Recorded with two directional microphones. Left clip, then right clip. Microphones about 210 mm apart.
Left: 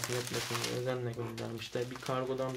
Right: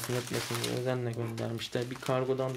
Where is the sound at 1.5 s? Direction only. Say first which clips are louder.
Right 3 dB; 45° right (ahead or behind).